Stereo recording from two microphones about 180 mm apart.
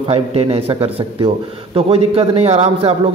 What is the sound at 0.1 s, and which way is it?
A man's voice, 35° right (ahead or behind).